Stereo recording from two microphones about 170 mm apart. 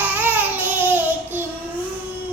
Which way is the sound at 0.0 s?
10° right (ahead or behind).